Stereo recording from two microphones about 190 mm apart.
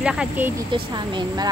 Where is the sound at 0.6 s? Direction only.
25° right (ahead or behind).